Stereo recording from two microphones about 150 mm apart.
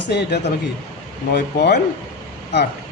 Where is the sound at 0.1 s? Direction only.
90° left.